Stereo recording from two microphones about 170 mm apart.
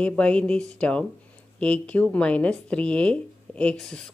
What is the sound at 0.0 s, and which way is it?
Speech, 5° left (ahead or behind).